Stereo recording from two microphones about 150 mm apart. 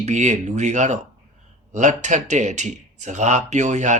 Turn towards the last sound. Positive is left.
turn(degrees=-50)  # may be behind; listen again after turning